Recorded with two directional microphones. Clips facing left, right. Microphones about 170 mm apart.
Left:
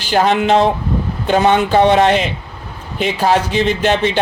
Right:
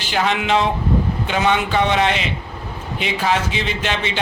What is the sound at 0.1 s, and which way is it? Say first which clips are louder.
Speech: left 6 dB; 40° left (ahead or behind).